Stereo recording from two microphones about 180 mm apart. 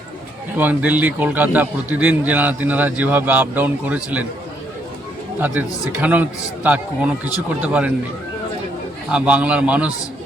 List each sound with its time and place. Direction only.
0.5 s a man's voice: 10° right (ahead or behind)
5.4 s a man's voice: 10° right (ahead or behind)
9.1 s a man's voice: 5° right (ahead or behind)